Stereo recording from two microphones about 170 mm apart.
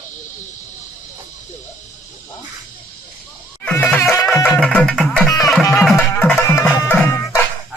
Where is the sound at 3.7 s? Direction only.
10° left (ahead or behind).